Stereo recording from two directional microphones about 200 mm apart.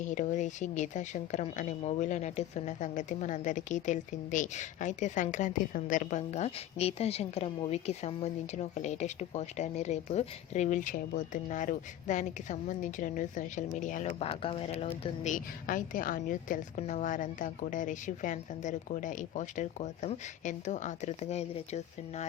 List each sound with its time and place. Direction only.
0.0 s a woman's voice: 40° left (ahead or behind)